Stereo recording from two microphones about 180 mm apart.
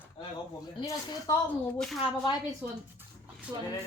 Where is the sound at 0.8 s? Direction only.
20° left (ahead or behind).